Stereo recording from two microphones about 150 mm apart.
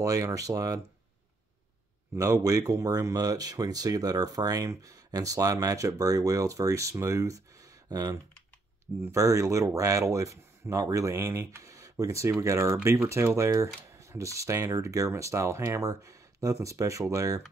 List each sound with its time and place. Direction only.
0.0 s speech: 20° right (ahead or behind)
2.1 s speech: 20° right (ahead or behind)